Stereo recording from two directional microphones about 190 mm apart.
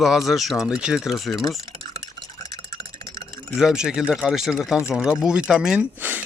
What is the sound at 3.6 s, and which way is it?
Speech, 5° right (ahead or behind).